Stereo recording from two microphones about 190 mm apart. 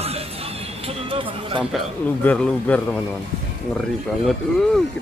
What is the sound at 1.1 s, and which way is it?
Music, 25° right (ahead or behind).